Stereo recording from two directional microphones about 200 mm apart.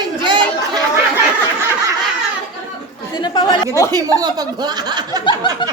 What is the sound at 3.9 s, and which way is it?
Speech, 20° right (ahead or behind).